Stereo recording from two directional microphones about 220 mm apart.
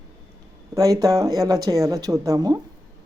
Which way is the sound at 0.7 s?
15° right (ahead or behind).